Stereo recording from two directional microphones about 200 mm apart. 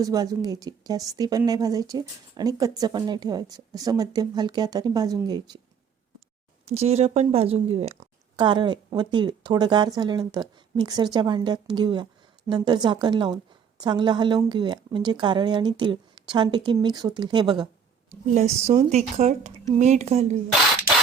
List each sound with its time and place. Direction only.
0.0 s a woman's voice: 20° right (ahead or behind)
6.7 s a woman's voice: 30° right (ahead or behind)
18.1 s a woman's voice: 35° right (ahead or behind)